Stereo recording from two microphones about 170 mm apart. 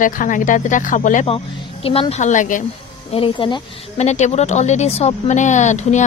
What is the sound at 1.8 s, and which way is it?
Speech, 35° left (ahead or behind).